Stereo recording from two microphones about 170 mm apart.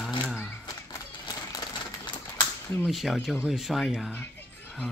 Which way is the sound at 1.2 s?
25° left (ahead or behind).